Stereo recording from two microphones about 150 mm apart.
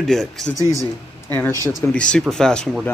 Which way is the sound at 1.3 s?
15° left (ahead or behind).